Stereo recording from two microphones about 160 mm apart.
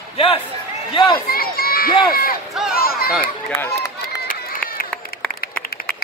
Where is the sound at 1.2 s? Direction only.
70° left (ahead or behind).